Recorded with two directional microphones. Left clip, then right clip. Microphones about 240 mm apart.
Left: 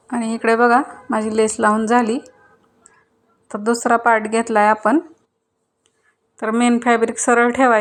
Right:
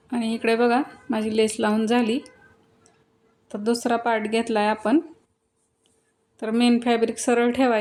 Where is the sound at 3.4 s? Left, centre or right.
Centre.